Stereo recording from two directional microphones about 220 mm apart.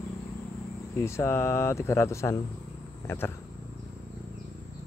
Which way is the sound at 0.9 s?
10° left (ahead or behind).